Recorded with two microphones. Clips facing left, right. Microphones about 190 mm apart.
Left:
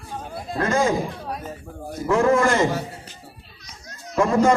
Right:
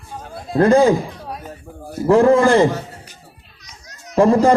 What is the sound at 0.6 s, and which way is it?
Speech, 35° right (ahead or behind).